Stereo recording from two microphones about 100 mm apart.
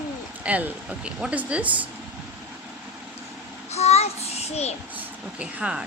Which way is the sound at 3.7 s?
90° left.